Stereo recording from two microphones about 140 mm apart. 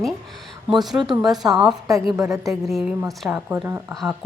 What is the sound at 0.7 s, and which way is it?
A woman's voice, centre (ahead or behind).